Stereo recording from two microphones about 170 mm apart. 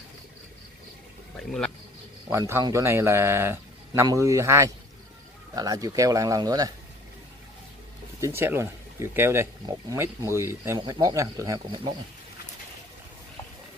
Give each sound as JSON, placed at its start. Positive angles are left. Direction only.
{"t": 2.3, "sound": "speech", "side_deg": -15}
{"t": 8.2, "sound": "speech", "side_deg": -15}